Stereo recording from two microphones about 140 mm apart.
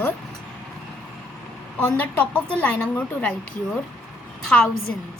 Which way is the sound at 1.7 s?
10° left (ahead or behind).